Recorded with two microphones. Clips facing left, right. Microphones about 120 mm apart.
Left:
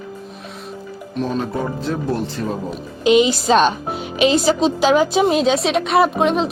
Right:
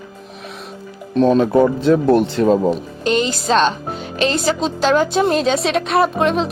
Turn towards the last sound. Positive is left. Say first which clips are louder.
# even
turn(degrees=0)  # may be behind; listen again after turning